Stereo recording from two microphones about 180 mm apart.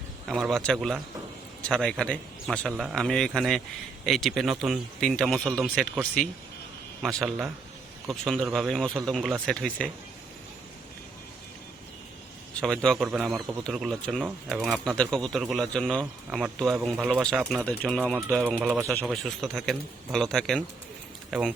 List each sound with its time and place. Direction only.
0.3 s speech: centre (ahead or behind)
12.5 s speech: 5° left (ahead or behind)